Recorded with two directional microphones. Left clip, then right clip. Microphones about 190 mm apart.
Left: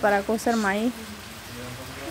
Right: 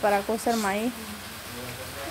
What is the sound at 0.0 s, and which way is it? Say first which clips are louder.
Speech: left 2 dB; 15° left (ahead or behind).